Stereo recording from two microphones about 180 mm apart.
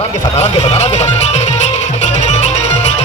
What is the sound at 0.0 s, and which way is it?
Music, 35° left (ahead or behind).